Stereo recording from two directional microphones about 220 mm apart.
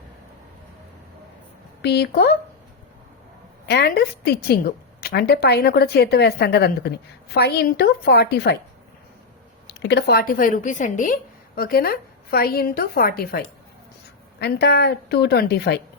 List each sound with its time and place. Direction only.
1.8 s a woman's voice: 50° left (ahead or behind)
3.7 s a woman's voice: 50° left (ahead or behind)
9.6 s a woman's voice: 50° left (ahead or behind)